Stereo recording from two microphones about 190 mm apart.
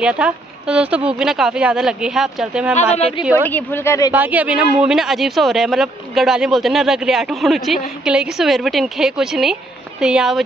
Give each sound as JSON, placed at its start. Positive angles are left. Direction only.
{"t": 0.0, "sound": "speech", "side_deg": -5}
{"t": 2.7, "sound": "speech", "side_deg": 30}
{"t": 3.4, "sound": "a woman's voice", "side_deg": 10}
{"t": 4.1, "sound": "a man's voice", "side_deg": -10}